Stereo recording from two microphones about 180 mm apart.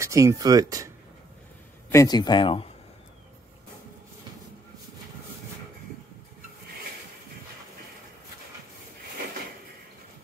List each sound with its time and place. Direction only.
0.0 s speech: 15° right (ahead or behind)
1.9 s speech: 20° left (ahead or behind)